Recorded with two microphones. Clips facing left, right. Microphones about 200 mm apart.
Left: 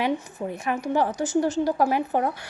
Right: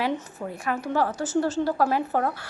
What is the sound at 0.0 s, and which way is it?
A woman's voice, 20° left (ahead or behind).